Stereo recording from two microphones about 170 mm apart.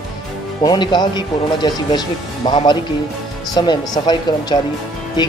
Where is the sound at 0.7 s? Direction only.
25° left (ahead or behind).